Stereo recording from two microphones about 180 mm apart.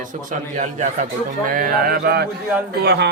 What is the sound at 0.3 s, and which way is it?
Speech, 45° right (ahead or behind).